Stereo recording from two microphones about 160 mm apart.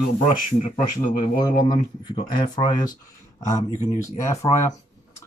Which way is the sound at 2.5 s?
25° left (ahead or behind).